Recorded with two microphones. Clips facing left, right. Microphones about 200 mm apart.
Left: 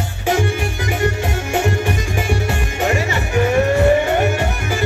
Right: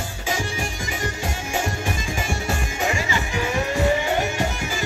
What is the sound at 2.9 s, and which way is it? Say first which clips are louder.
Music: left 5 dB; 60° left (ahead or behind).